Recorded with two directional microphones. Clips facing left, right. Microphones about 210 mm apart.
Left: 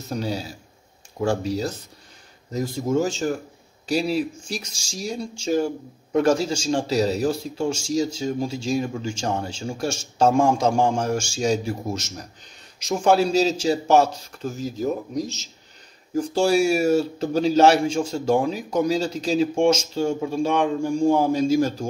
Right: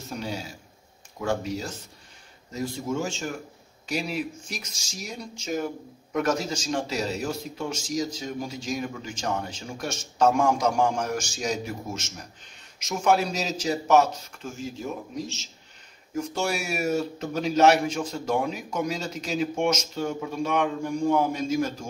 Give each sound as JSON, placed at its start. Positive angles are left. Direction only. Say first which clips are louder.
{"t": 0.1, "sound": "a man's voice", "louder": "left 6 dB", "side_deg": 35}